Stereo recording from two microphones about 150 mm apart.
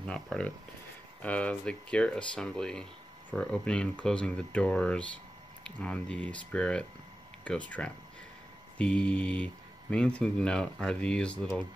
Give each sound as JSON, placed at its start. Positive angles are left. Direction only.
{"t": 0.0, "sound": "speech", "side_deg": 5}